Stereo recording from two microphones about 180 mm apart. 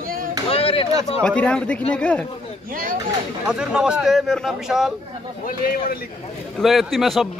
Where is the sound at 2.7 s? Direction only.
50° right (ahead or behind).